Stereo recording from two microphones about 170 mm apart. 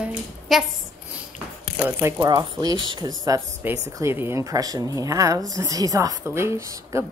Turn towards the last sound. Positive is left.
turn(degrees=-20)  # may be behind; listen again after turning